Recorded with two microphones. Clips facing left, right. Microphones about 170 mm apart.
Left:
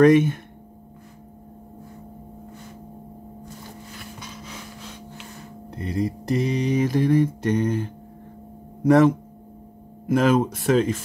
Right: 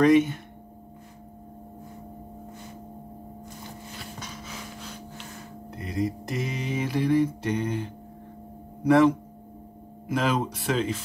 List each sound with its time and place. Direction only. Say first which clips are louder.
0.0 s speech: left 4 dB; 50° left (ahead or behind)
5.7 s mantra: left 3 dB; 30° left (ahead or behind)
8.8 s speech: left 3 dB; 45° left (ahead or behind)